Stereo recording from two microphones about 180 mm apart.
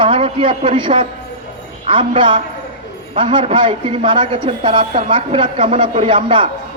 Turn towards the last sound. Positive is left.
turn(degrees=-25)  # may be behind; listen again after turning